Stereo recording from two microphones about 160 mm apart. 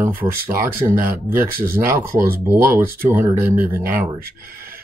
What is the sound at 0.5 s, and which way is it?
Speech, 15° right (ahead or behind).